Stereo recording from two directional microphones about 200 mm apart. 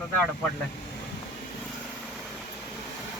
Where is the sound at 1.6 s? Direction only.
Centre (ahead or behind).